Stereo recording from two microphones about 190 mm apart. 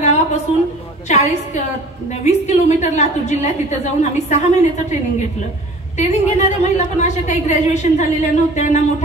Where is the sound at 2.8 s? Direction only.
40° left (ahead or behind).